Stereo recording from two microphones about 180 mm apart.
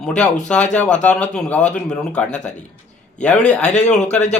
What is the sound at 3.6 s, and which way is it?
Speech, 40° left (ahead or behind).